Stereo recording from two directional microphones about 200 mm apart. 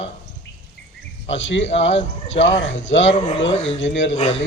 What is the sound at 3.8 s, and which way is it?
Speech, 65° left (ahead or behind).